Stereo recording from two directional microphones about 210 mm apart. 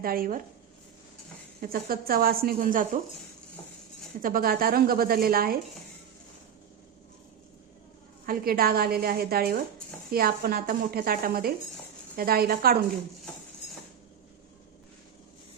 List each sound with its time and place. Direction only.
0.0 s a woman's voice: 45° right (ahead or behind)
1.6 s a woman's voice: 45° right (ahead or behind)
4.2 s a woman's voice: 45° right (ahead or behind)
8.3 s a woman's voice: 45° right (ahead or behind)